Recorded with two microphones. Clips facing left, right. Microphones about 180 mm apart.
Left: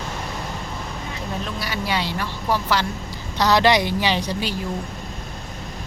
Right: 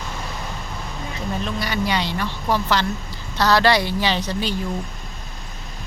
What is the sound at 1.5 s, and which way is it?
A woman's voice, 5° left (ahead or behind).